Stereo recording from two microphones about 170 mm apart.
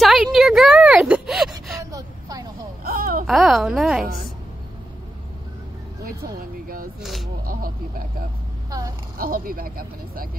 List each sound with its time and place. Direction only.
0.0 s a sound: centre (ahead or behind)
1.9 s vehicle: 20° right (ahead or behind)
2.8 s a sound: 60° right (ahead or behind)
3.3 s music: centre (ahead or behind)
7.0 s speech: centre (ahead or behind)
8.6 s vehicle: 20° right (ahead or behind)
9.2 s speech: 55° right (ahead or behind)